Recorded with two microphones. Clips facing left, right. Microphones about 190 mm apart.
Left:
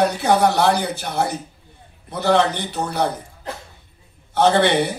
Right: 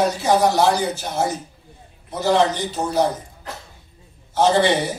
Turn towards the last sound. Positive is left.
turn(degrees=60)  # may be behind; listen again after turning